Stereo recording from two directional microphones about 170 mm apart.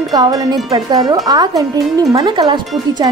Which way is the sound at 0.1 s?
25° right (ahead or behind).